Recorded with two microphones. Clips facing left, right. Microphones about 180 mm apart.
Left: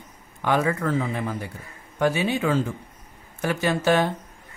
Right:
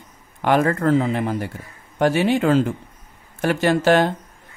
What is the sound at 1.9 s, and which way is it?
Speech, 60° right (ahead or behind).